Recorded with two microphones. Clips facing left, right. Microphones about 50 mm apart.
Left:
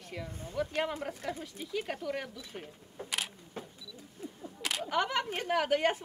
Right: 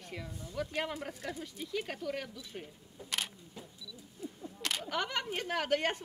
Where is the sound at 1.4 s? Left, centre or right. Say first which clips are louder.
Left 1 dB; centre.